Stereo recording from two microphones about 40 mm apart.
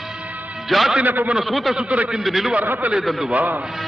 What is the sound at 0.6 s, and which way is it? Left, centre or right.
Speech, centre.